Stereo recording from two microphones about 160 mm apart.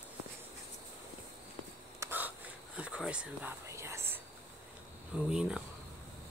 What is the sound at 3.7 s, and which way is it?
Whispering, 15° right (ahead or behind).